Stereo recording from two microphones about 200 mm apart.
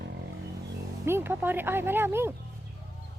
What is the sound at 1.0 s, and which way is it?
Speech, 10° right (ahead or behind).